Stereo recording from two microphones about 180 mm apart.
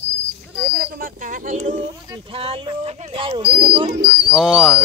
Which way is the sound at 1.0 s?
45° right (ahead or behind).